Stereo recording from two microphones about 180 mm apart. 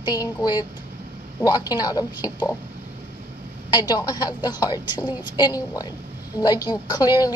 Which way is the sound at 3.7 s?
20° left (ahead or behind).